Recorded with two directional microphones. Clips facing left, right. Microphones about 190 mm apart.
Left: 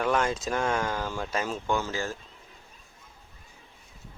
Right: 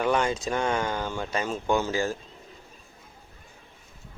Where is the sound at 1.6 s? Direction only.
15° right (ahead or behind).